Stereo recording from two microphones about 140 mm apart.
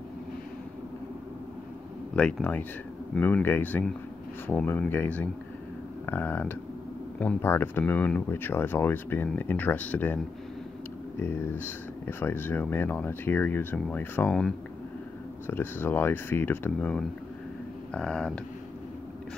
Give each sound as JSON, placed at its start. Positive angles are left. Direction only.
{"t": 2.1, "sound": "speech", "side_deg": 10}